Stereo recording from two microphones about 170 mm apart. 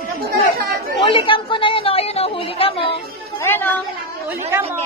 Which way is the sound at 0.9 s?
30° left (ahead or behind).